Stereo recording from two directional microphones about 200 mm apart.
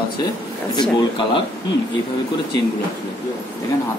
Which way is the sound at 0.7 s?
25° left (ahead or behind).